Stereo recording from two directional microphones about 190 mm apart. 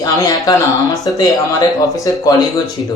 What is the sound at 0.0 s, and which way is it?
Speech, 20° left (ahead or behind).